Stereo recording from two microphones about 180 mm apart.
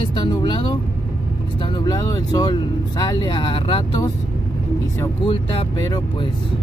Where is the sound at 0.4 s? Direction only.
25° left (ahead or behind).